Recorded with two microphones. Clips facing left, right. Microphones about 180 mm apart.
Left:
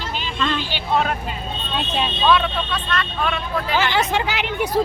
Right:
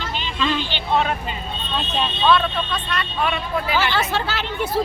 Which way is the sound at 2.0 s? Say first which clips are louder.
Even; 10° left (ahead or behind).